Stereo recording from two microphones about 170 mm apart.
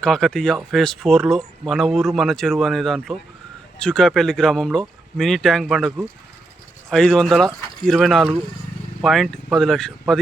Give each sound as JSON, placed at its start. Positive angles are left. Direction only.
{"t": 0.0, "sound": "speech", "side_deg": 5}
{"t": 6.9, "sound": "speech", "side_deg": 5}